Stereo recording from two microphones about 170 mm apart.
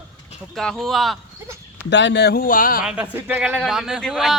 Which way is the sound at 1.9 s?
90° left.